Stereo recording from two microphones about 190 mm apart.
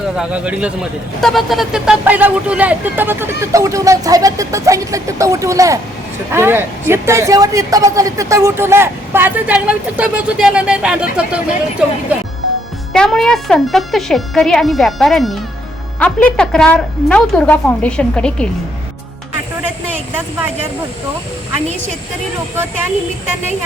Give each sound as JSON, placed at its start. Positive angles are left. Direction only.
{"t": 0.2, "sound": "a man's voice", "side_deg": -5}
{"t": 12.9, "sound": "speech", "side_deg": 0}